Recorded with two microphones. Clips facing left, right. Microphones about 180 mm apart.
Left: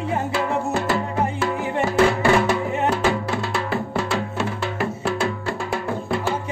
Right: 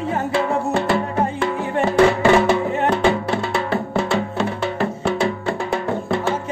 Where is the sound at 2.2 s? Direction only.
25° right (ahead or behind).